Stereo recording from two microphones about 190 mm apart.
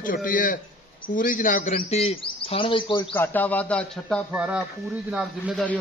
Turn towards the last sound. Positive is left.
turn(degrees=-5)  # may be behind; listen again after turning